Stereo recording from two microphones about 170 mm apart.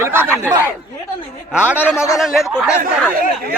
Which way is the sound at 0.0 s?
15° right (ahead or behind).